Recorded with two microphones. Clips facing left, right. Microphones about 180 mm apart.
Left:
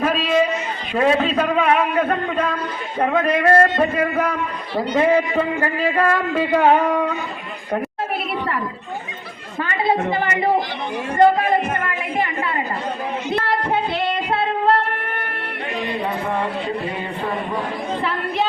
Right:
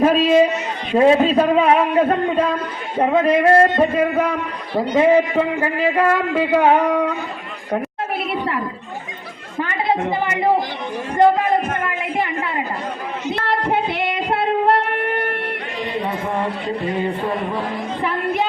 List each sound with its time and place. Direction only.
0.0 s a sound: 35° right (ahead or behind)
0.9 s a man's voice: 25° right (ahead or behind)
13.5 s child singing: 20° right (ahead or behind)
14.7 s wind instrument: 20° right (ahead or behind)